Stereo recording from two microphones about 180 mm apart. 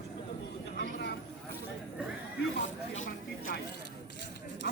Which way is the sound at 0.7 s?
65° left (ahead or behind).